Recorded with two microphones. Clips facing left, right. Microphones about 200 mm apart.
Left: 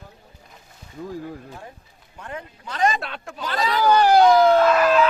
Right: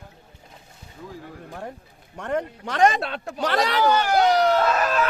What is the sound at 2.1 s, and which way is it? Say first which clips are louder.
Speech: right 9 dB; 70° right (ahead or behind).